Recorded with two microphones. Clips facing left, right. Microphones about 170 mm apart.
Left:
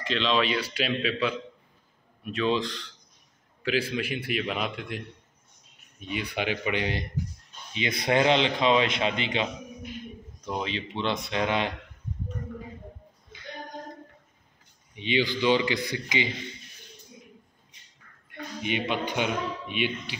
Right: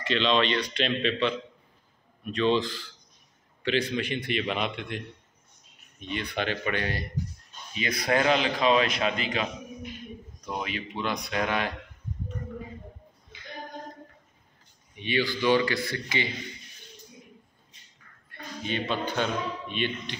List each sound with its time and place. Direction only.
0.0 s a man's voice: centre (ahead or behind)
2.3 s a man's voice: centre (ahead or behind); by 9.5 s 25° left (ahead or behind)
10.6 s a man's voice: 25° left (ahead or behind)
15.0 s speech: 20° left (ahead or behind)
18.6 s speech: 15° left (ahead or behind)